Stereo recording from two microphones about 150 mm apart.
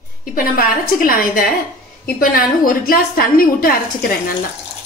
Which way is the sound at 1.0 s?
75° left (ahead or behind).